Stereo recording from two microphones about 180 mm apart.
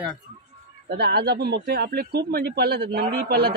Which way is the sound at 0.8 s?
65° right (ahead or behind).